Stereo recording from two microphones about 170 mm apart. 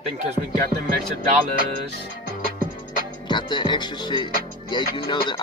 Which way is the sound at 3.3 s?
25° left (ahead or behind).